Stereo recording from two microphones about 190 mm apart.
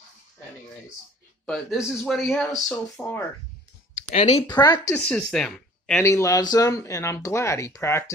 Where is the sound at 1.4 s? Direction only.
Centre (ahead or behind).